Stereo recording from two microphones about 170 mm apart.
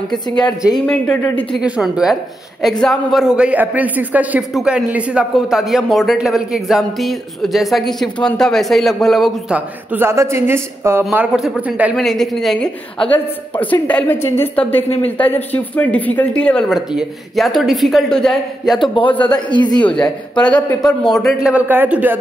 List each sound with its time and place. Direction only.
0.7 s a man's voice: 5° left (ahead or behind)
1.6 s a man's voice: 5° right (ahead or behind)
9.9 s a woman's voice: 15° right (ahead or behind); by 18.9 s centre (ahead or behind)
19.2 s speech: 25° left (ahead or behind)
19.8 s a man's voice: 5° left (ahead or behind); by 22.2 s 10° right (ahead or behind)